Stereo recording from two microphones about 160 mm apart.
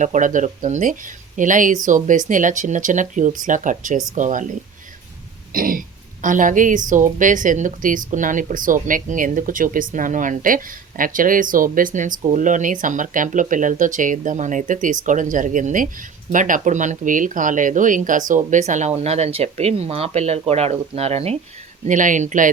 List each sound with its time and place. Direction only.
0.0 s speech: 50° right (ahead or behind)
5.5 s throat clearing: 60° right (ahead or behind)
6.2 s a woman's voice: 55° right (ahead or behind)
21.8 s speech: 55° right (ahead or behind)